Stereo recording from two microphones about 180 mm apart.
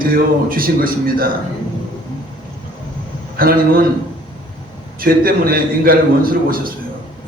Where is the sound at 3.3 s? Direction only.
55° right (ahead or behind).